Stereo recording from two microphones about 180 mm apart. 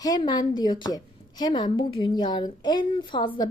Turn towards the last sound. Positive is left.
turn(degrees=25)  # may be behind; listen again after turning